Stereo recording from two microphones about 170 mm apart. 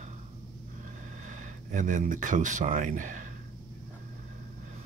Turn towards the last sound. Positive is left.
turn(degrees=-50)  # may be behind; listen again after turning